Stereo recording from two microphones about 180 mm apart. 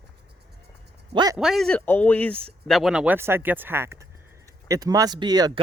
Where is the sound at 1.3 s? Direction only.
Centre (ahead or behind).